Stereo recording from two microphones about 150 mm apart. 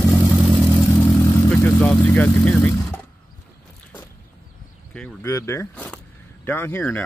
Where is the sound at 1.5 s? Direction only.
10° left (ahead or behind).